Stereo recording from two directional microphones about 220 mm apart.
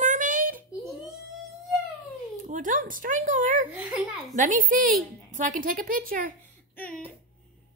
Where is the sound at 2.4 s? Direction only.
35° right (ahead or behind).